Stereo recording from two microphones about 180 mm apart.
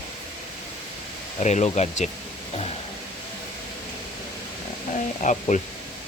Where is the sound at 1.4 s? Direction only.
40° left (ahead or behind).